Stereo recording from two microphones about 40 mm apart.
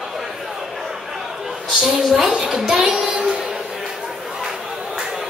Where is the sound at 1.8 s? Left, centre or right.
Centre; by 3.3 s right.